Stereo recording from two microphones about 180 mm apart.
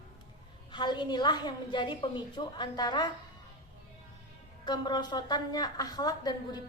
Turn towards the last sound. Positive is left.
turn(degrees=20)  # may be behind; listen again after turning